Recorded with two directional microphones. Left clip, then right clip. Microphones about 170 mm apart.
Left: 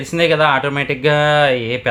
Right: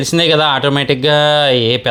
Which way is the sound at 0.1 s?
40° right (ahead or behind).